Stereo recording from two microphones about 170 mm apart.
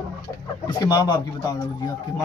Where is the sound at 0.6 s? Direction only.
25° left (ahead or behind).